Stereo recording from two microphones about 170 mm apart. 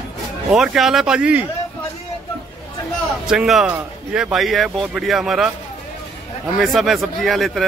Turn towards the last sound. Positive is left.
turn(degrees=0)  # may be behind; listen again after turning